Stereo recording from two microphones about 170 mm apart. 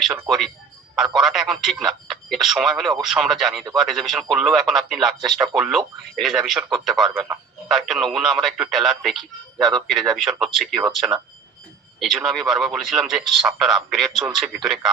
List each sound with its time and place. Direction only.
0.3 s a man's voice: centre (ahead or behind)